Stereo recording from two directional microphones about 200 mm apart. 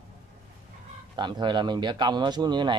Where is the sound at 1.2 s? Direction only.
20° right (ahead or behind).